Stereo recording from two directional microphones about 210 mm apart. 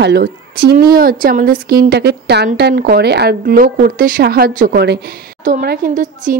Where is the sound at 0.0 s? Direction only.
50° right (ahead or behind).